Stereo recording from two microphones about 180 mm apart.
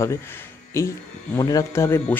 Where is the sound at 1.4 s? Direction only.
20° left (ahead or behind).